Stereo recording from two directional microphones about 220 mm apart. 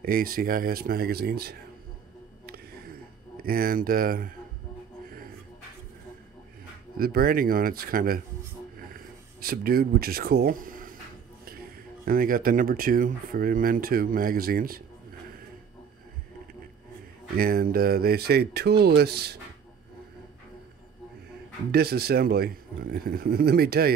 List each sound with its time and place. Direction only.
0.0 s speech: 40° right (ahead or behind)
2.4 s a sound: 45° right (ahead or behind)
3.4 s speech: 40° right (ahead or behind)
7.0 s speech: 45° right (ahead or behind)
8.8 s a sound: 40° right (ahead or behind)
11.4 s speech: 40° right (ahead or behind)
17.4 s speech: 40° right (ahead or behind)
21.7 s speech: 45° right (ahead or behind)